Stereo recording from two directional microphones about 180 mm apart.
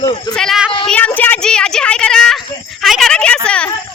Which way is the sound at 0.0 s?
20° left (ahead or behind).